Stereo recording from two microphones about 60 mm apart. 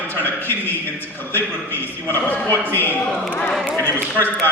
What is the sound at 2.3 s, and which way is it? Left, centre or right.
Speech, left.